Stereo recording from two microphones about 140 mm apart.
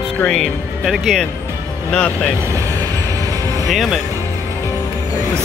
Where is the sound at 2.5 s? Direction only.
25° right (ahead or behind).